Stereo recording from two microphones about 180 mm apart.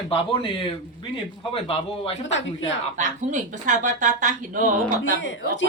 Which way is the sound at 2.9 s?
45° right (ahead or behind).